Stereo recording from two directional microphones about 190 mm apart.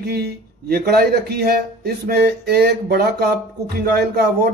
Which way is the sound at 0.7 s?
55° right (ahead or behind).